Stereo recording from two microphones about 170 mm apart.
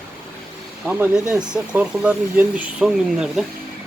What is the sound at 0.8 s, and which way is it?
Speech, 5° right (ahead or behind).